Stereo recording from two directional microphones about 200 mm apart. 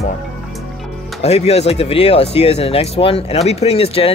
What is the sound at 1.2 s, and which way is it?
Speech, 30° left (ahead or behind).